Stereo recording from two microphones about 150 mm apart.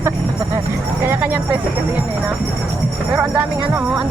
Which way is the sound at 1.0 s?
15° right (ahead or behind).